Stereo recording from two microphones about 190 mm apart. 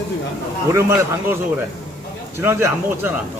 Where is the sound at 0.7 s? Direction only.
15° right (ahead or behind).